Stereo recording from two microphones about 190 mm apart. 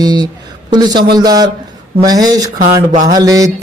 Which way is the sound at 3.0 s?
20° right (ahead or behind).